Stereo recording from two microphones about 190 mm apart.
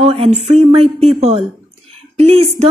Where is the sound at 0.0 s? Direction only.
35° right (ahead or behind).